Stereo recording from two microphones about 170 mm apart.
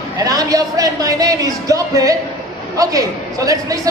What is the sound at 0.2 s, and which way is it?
A man's voice, 20° right (ahead or behind).